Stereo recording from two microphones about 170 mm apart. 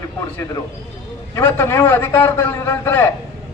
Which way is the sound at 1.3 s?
15° left (ahead or behind).